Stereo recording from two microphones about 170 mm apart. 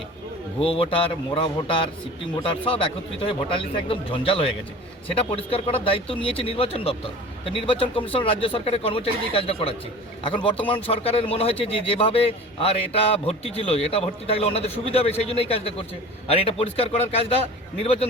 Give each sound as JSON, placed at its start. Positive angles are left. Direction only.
{"t": 0.6, "sound": "a man's voice", "side_deg": 30}